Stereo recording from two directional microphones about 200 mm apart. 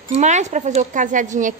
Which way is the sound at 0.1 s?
35° right (ahead or behind).